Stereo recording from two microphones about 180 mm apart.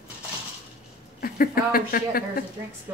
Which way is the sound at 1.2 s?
55° left (ahead or behind).